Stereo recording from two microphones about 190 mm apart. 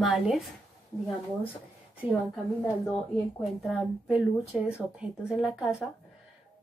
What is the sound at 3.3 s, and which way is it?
Speech, centre (ahead or behind).